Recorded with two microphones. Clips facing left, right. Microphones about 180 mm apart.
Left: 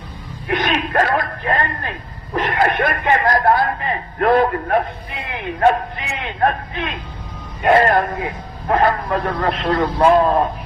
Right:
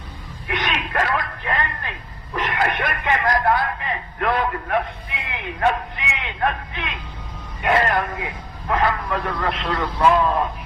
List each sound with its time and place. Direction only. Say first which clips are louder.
0.5 s a man's voice: left 6 dB; 40° left (ahead or behind)